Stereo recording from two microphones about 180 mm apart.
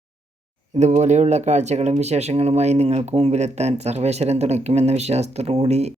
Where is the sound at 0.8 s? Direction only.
40° right (ahead or behind).